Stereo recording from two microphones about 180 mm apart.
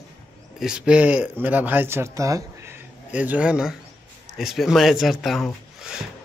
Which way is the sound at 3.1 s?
5° right (ahead or behind).